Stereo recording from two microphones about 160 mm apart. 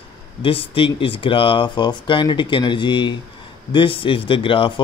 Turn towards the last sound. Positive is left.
turn(degrees=35)  # may be behind; listen again after turning